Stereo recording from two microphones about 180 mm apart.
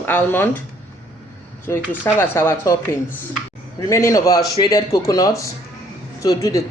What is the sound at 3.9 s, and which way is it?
Speech, 15° left (ahead or behind).